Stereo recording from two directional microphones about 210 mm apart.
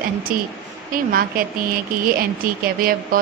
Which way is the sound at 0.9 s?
40° right (ahead or behind).